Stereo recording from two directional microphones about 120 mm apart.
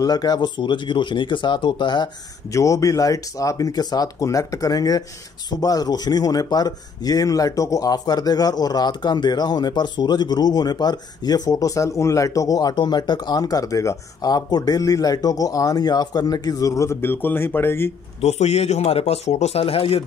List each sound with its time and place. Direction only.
0.0 s speech: 35° left (ahead or behind)
2.5 s speech: 25° left (ahead or behind)
18.2 s speech: 60° left (ahead or behind)